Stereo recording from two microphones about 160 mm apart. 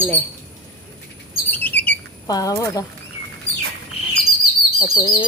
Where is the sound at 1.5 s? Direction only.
10° left (ahead or behind).